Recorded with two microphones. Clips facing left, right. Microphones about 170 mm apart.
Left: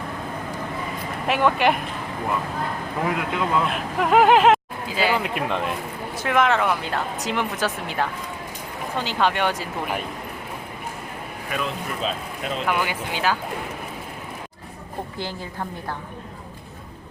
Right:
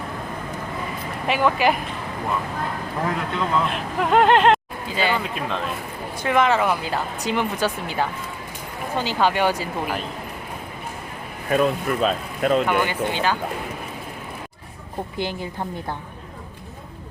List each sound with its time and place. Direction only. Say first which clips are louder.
1.3 s speech: even; centre (ahead or behind)
3.3 s speech: right 1 dB; 5° left (ahead or behind)
5.5 s a man's voice: left 2 dB; 15° left (ahead or behind)
6.1 s speech: right 1 dB; centre (ahead or behind)
11.5 s speech: right 9 dB; 45° right (ahead or behind)
12.6 s speech: right 3 dB; 5° left (ahead or behind)
15.2 s a woman's voice: right 6 dB; 20° right (ahead or behind)